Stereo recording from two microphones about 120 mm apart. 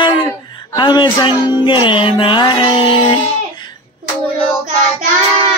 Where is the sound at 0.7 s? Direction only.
40° left (ahead or behind).